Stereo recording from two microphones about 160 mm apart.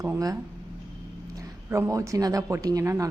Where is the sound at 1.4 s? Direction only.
20° right (ahead or behind).